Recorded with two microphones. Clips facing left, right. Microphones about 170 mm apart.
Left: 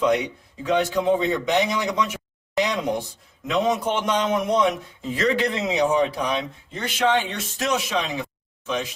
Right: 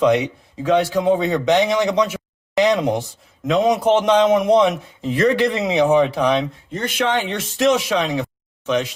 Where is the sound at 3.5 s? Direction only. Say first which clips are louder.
Right 6 dB; 85° right; by 5.4 s 65° right (ahead or behind).